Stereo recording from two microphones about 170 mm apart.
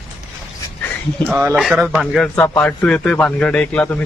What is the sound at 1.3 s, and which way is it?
Speech, 15° right (ahead or behind).